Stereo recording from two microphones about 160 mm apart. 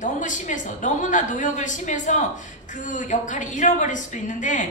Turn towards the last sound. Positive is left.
turn(degrees=50)  # may be behind; listen again after turning